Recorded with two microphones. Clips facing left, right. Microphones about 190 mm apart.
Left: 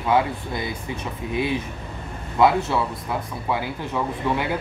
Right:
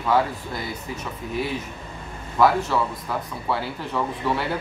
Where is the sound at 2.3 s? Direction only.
15° left (ahead or behind).